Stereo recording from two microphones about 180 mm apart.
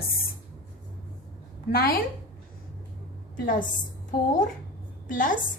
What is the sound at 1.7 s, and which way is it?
Speech, 55° left (ahead or behind).